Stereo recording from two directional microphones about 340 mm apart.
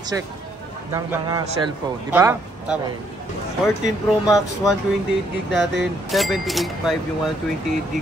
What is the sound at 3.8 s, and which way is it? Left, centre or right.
Speech, centre.